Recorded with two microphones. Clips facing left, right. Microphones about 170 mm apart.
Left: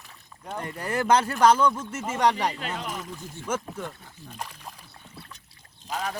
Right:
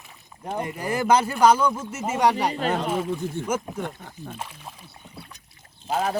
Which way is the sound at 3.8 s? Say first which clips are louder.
Right 5 dB; 60° right (ahead or behind).